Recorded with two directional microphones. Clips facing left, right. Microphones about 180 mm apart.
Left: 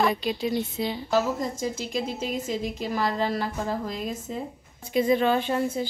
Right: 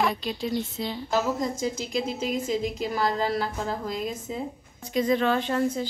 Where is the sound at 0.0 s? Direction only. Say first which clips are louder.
Left 2 dB; 5° left (ahead or behind).